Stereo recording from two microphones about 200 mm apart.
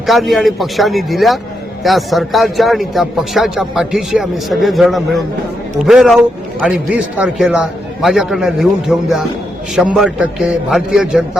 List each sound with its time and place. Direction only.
0.0 s speech: centre (ahead or behind)